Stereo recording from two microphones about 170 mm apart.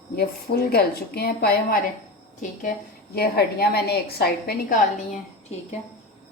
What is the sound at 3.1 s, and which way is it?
A woman's voice, 65° left (ahead or behind).